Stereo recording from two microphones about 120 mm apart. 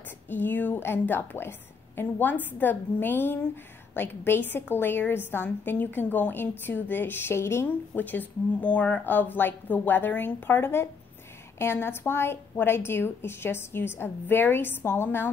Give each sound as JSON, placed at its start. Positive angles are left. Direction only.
{"t": 0.3, "sound": "a woman's voice", "side_deg": 15}